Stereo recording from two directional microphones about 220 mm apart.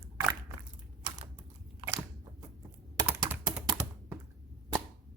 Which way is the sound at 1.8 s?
25° right (ahead or behind).